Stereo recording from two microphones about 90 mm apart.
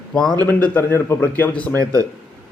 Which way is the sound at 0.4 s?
20° left (ahead or behind).